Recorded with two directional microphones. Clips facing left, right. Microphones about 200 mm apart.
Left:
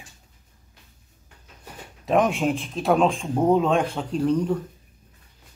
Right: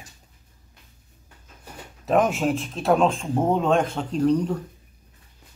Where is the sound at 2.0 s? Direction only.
Centre (ahead or behind).